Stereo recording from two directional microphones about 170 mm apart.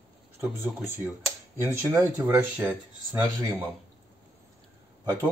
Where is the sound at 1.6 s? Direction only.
15° right (ahead or behind).